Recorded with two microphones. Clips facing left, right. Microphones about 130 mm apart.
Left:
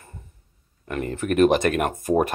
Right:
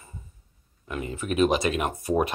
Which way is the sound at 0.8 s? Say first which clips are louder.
Left 5 dB; 60° left (ahead or behind).